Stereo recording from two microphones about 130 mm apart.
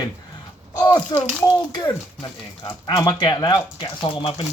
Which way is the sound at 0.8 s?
30° left (ahead or behind).